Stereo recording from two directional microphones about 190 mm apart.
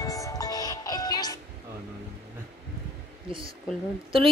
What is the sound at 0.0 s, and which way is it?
Music, 20° left (ahead or behind).